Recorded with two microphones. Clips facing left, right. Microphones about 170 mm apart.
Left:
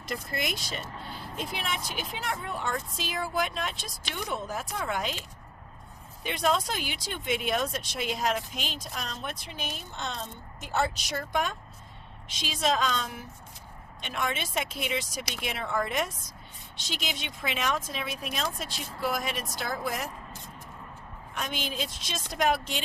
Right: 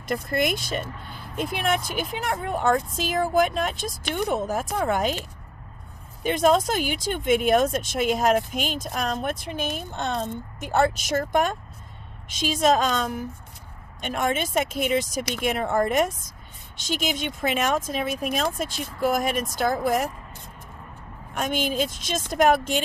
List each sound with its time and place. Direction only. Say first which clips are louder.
0.0 s speech: right 9 dB; 50° right (ahead or behind)
6.2 s speech: right 8 dB; 45° right (ahead or behind)
21.3 s speech: right 9 dB; 45° right (ahead or behind)